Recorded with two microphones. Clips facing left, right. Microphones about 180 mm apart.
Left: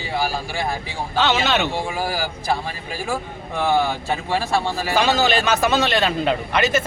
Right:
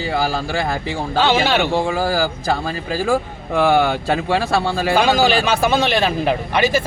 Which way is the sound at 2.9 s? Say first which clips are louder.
Right 8 dB; 90° right.